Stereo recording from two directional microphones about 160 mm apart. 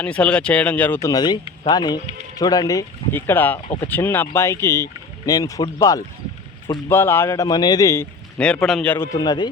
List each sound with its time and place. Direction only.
0.0 s speech: 10° left (ahead or behind)
1.1 s speech: 25° left (ahead or behind)
8.6 s speech: 5° left (ahead or behind)
9.1 s speech: 25° left (ahead or behind)